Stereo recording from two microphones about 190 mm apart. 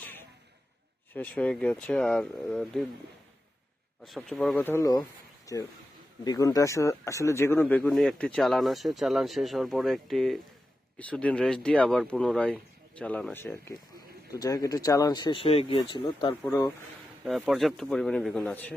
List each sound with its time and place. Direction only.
0.0 s a sound: 10° left (ahead or behind)
1.1 s speech: 5° left (ahead or behind)
4.0 s speech: centre (ahead or behind); by 16.7 s 15° left (ahead or behind)
17.2 s speech: centre (ahead or behind)